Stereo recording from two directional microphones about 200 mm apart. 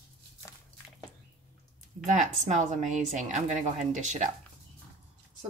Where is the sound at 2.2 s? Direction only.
35° right (ahead or behind).